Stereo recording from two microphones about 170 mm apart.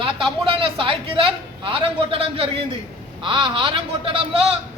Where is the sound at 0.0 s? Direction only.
30° right (ahead or behind).